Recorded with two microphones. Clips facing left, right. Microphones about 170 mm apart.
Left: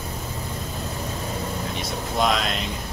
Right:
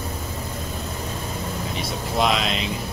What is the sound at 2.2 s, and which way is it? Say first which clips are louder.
Speech: right 1 dB; centre (ahead or behind).